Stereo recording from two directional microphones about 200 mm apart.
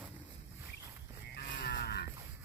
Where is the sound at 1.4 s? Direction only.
50° left (ahead or behind).